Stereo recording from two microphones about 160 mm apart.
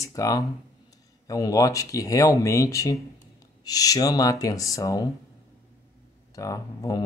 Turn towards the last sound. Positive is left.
turn(degrees=20)  # may be behind; listen again after turning